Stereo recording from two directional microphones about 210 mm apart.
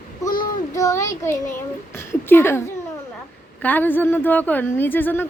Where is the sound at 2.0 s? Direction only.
10° left (ahead or behind).